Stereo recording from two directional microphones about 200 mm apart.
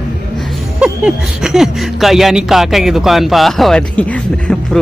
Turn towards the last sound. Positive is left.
turn(degrees=5)  # may be behind; listen again after turning